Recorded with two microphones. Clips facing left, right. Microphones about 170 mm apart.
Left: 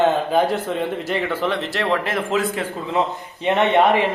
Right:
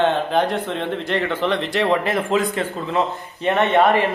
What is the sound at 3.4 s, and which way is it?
Speech, 15° left (ahead or behind).